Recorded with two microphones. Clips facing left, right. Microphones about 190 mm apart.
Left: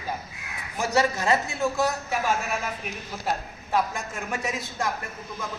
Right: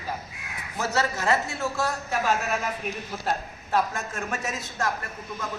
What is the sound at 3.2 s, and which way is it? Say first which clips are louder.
A man's voice: left 1 dB; 15° left (ahead or behind).